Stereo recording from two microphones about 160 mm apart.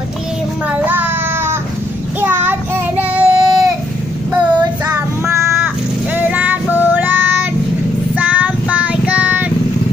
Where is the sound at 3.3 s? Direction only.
25° right (ahead or behind).